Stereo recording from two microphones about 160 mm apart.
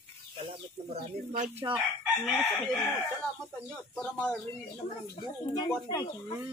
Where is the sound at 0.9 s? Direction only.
55° right (ahead or behind).